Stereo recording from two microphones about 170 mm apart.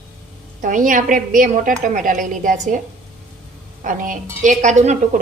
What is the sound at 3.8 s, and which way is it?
A woman's voice, 50° right (ahead or behind).